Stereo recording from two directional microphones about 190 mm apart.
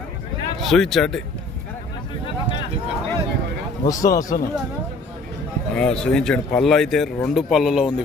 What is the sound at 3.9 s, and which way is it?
Speech, 20° left (ahead or behind).